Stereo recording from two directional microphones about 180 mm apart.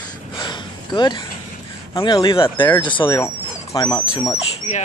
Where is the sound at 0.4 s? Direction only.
25° left (ahead or behind).